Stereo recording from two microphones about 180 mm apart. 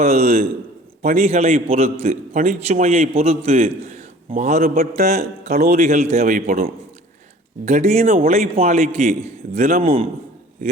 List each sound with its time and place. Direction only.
0.0 s a man's voice: 35° right (ahead or behind)
4.6 s a man's voice: 55° right (ahead or behind)
4.9 s a man's voice: 40° right (ahead or behind)
8.3 s a man's voice: 35° right (ahead or behind)